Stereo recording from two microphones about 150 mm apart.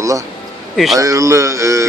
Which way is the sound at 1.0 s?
20° right (ahead or behind).